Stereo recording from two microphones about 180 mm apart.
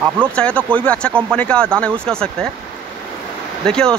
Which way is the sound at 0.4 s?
5° left (ahead or behind).